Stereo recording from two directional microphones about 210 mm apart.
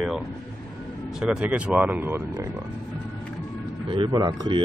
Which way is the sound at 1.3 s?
5° right (ahead or behind).